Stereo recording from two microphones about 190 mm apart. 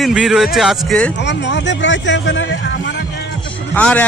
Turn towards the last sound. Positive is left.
turn(degrees=5)  # may be behind; listen again after turning